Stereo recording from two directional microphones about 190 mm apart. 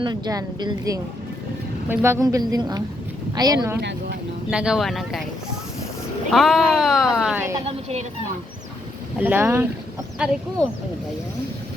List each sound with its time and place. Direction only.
0.0 s speech: 20° right (ahead or behind)
3.8 s speech: 60° right (ahead or behind)
4.5 s speech: 5° right (ahead or behind)
6.3 s speech: centre (ahead or behind)
7.6 s a woman's voice: 30° right (ahead or behind)
9.1 s speech: 10° right (ahead or behind)